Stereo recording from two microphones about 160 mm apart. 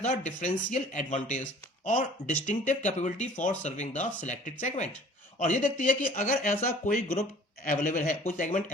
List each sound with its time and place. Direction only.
0.0 s speech: 50° left (ahead or behind)